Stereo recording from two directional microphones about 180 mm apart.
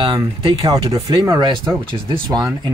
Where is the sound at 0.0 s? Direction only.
25° right (ahead or behind).